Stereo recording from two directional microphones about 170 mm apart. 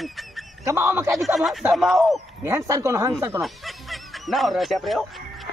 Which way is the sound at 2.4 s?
15° right (ahead or behind).